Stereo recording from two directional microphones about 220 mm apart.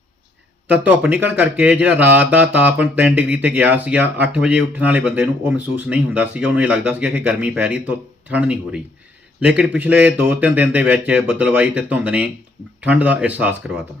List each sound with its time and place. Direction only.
0.7 s speech: 5° right (ahead or behind)